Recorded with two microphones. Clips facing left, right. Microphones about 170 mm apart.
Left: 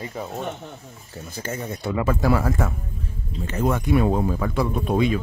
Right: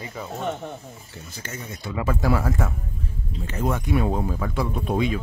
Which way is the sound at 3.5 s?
75° left (ahead or behind).